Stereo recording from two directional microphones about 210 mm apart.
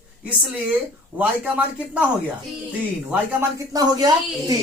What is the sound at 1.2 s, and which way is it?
Speech, 5° right (ahead or behind).